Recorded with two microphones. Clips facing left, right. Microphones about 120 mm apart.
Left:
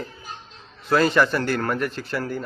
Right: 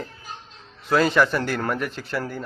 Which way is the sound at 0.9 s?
5° right (ahead or behind).